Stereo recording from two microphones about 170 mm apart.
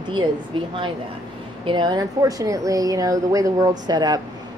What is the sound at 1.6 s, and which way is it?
A woman's voice, 25° right (ahead or behind).